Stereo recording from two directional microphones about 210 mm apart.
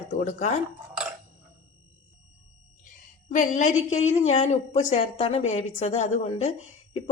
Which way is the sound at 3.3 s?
35° left (ahead or behind).